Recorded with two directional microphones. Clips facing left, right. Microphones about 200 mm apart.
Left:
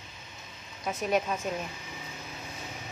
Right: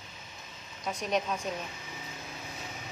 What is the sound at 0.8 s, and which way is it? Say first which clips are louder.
Speech: left 3 dB; 5° left (ahead or behind).